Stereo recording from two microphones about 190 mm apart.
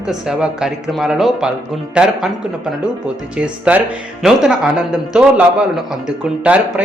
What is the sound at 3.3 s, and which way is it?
Speech, 5° right (ahead or behind).